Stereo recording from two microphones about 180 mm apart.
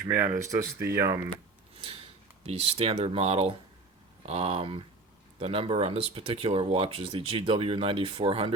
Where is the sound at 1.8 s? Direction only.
30° right (ahead or behind).